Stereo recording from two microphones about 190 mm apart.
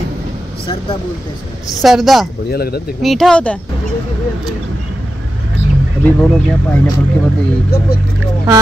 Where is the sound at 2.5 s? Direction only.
55° left (ahead or behind).